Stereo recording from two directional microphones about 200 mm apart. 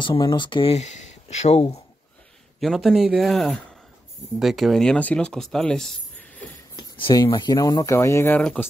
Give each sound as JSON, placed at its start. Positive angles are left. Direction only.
{"t": 0.0, "sound": "speech", "side_deg": 25}
{"t": 2.6, "sound": "speech", "side_deg": 0}
{"t": 6.8, "sound": "speech", "side_deg": 25}